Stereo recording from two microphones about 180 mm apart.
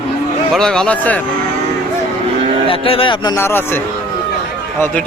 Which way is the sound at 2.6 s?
30° left (ahead or behind).